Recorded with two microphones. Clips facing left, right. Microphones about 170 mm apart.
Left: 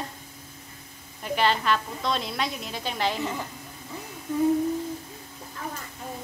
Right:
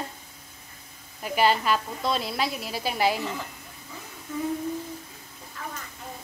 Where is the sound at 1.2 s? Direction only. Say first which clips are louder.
Right 1 dB; 10° right (ahead or behind).